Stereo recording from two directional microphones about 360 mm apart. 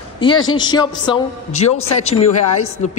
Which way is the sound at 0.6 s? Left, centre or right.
Centre.